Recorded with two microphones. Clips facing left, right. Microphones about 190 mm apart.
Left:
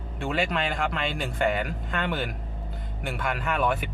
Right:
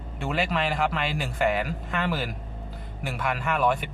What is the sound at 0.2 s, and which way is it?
A man's voice, centre (ahead or behind).